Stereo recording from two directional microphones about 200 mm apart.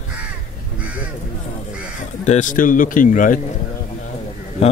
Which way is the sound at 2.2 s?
35° left (ahead or behind).